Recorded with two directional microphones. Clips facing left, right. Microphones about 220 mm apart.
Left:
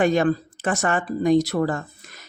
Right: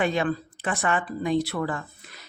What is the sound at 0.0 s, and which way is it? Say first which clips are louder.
Speech: left 6 dB; 45° left (ahead or behind).